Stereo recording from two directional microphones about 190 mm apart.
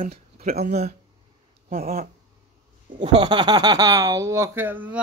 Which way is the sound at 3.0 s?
25° right (ahead or behind).